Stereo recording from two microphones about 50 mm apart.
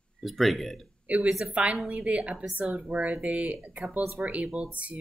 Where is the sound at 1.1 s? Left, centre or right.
Right.